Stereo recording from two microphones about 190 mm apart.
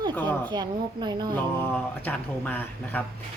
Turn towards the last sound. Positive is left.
turn(degrees=10)  # may be behind; listen again after turning